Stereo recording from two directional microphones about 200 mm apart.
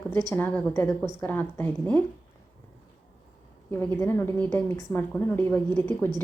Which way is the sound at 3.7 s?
10° left (ahead or behind).